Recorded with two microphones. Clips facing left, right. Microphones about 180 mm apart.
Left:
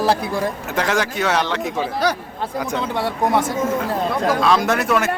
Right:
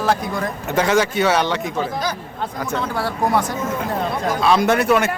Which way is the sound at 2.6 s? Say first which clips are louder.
Even; 20° left (ahead or behind).